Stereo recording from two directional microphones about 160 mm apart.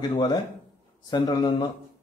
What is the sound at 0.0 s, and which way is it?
A man's voice, 30° left (ahead or behind).